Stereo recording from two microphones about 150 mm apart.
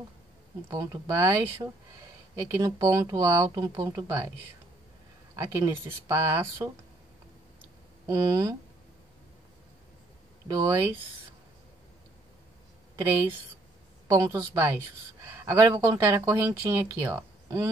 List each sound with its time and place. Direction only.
0.7 s speech: 25° right (ahead or behind)
5.3 s speech: 25° right (ahead or behind)
8.1 s speech: 20° right (ahead or behind)
10.5 s speech: 20° right (ahead or behind)
14.0 s speech: 20° right (ahead or behind)